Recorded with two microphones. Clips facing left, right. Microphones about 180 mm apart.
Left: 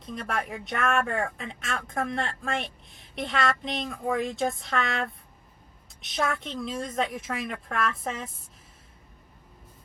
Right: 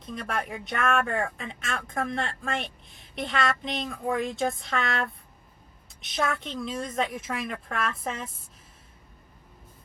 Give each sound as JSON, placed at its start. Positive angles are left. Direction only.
{"t": 0.2, "sound": "speech", "side_deg": 0}
{"t": 6.0, "sound": "a woman's voice", "side_deg": 0}